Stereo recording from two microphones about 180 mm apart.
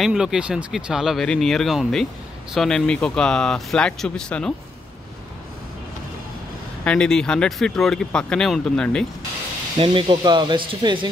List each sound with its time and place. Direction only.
0.0 s speech: 5° right (ahead or behind)
6.8 s speech: 5° left (ahead or behind)
9.8 s speech: 30° right (ahead or behind)